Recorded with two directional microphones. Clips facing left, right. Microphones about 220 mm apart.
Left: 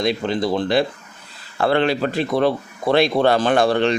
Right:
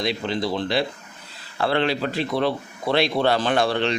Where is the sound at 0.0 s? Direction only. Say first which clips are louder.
Left 4 dB; 50° left (ahead or behind).